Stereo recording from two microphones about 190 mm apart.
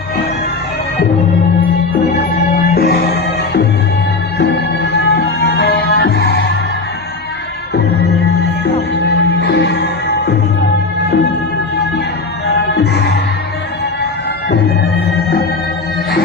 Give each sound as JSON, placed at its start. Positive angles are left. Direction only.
{"t": 2.6, "sound": "music", "side_deg": 55}
{"t": 8.3, "sound": "music", "side_deg": 60}
{"t": 12.5, "sound": "music", "side_deg": 65}